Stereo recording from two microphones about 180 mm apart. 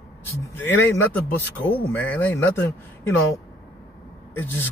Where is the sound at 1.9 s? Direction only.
10° left (ahead or behind).